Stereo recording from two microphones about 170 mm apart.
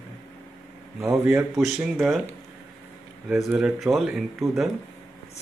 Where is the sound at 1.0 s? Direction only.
15° right (ahead or behind).